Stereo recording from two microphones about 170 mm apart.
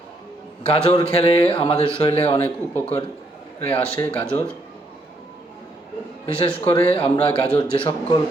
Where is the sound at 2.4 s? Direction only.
10° left (ahead or behind).